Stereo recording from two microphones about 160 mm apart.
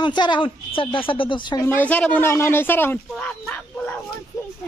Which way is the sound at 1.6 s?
10° left (ahead or behind).